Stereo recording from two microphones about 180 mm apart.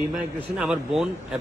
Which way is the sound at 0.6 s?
Centre (ahead or behind).